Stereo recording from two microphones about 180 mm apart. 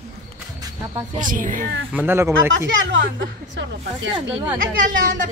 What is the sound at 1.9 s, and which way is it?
Speech, 10° right (ahead or behind).